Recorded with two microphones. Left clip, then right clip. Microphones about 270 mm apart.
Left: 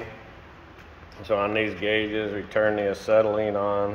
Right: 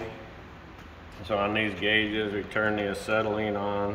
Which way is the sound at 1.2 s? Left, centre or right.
Centre.